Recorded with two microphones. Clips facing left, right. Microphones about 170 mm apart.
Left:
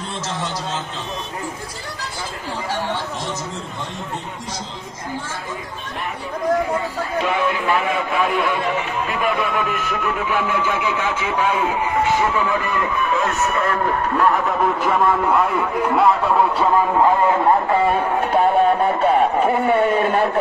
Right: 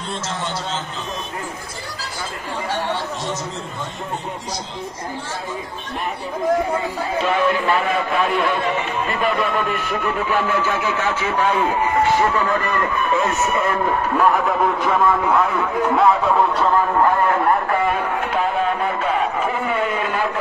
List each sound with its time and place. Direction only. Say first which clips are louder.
7.2 s a man's voice: right 3 dB; 10° left (ahead or behind)
13.1 s a man's voice: right 2 dB; 5° right (ahead or behind)
17.0 s speech: left 1 dB; 20° left (ahead or behind)
17.8 s speech: left 3 dB; 35° left (ahead or behind)